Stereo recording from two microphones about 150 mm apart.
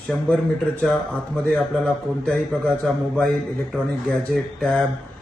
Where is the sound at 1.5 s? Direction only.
5° left (ahead or behind).